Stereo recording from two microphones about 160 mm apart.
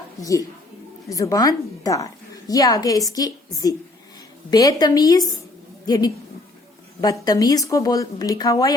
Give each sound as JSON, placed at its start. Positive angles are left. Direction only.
{"t": 0.2, "sound": "a woman's voice", "side_deg": 20}